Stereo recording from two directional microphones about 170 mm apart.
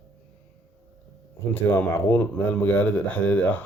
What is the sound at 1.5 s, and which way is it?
Speech, 10° left (ahead or behind).